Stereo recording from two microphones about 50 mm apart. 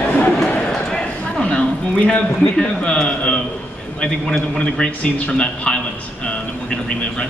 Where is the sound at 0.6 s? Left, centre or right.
Centre.